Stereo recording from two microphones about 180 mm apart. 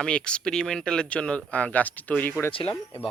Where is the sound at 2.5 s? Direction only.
30° left (ahead or behind).